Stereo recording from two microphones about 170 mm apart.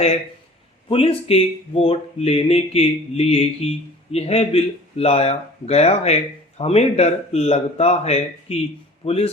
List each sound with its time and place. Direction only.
0.9 s speech: 35° left (ahead or behind)